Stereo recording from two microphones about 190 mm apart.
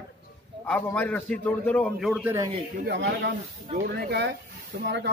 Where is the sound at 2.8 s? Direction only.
60° right (ahead or behind).